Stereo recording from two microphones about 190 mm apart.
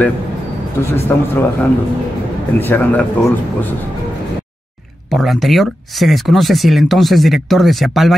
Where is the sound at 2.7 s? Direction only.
10° left (ahead or behind).